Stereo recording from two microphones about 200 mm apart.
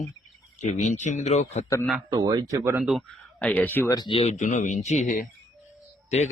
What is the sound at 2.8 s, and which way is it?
A man's voice, centre (ahead or behind).